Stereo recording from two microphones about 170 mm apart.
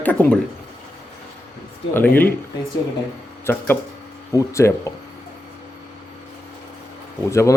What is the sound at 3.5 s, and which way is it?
Speech, 15° left (ahead or behind).